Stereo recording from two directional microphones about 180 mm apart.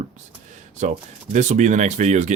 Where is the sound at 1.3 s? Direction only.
40° right (ahead or behind).